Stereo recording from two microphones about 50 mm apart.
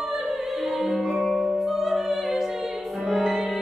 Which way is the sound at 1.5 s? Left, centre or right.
Centre.